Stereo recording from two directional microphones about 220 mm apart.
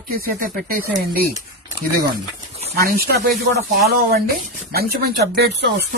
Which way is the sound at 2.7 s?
45° right (ahead or behind).